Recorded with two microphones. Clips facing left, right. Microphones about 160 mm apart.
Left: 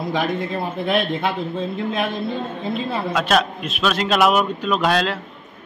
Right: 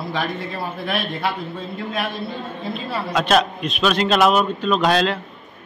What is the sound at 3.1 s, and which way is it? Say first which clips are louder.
A man's voice: right 3 dB; centre (ahead or behind).